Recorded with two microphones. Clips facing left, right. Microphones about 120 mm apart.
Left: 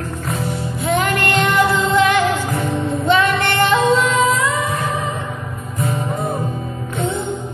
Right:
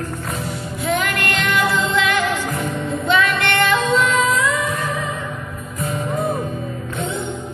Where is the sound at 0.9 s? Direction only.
35° left (ahead or behind).